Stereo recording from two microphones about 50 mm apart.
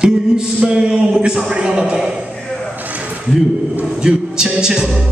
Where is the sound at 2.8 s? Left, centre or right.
Right.